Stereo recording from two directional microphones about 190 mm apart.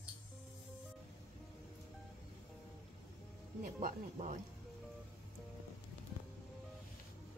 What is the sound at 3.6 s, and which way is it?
Speech, 45° right (ahead or behind).